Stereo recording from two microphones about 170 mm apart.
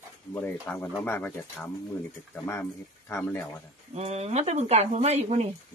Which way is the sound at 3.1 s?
15° left (ahead or behind).